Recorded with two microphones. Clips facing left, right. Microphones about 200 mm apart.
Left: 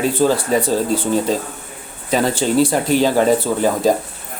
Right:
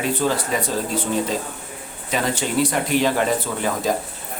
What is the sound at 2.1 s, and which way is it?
A man's voice, 30° left (ahead or behind).